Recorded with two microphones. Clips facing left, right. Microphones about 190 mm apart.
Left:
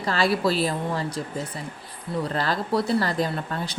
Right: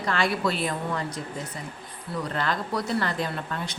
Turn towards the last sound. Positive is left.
turn(degrees=35)  # may be behind; listen again after turning